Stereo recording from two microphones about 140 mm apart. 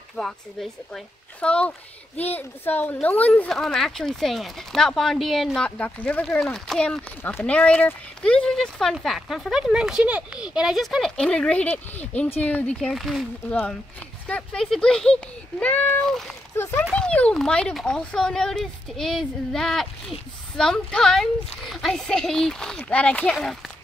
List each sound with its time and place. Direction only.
0.2 s speech: centre (ahead or behind)
16.5 s speech: 15° left (ahead or behind); by 23.7 s centre (ahead or behind)